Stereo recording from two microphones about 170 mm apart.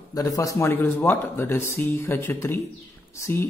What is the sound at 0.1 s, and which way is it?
A man's voice, 20° left (ahead or behind).